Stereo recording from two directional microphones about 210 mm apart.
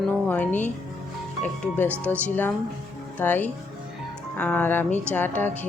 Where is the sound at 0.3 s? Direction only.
10° left (ahead or behind).